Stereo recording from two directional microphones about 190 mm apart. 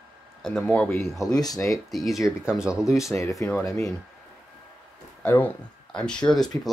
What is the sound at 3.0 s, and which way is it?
Speech, 15° left (ahead or behind).